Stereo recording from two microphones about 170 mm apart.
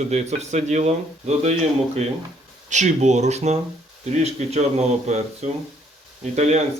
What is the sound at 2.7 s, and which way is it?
Speech, 45° right (ahead or behind).